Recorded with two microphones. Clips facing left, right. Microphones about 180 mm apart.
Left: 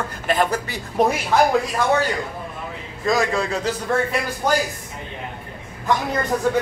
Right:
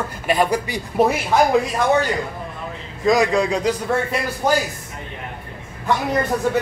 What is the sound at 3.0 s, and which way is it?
Speech, 15° right (ahead or behind).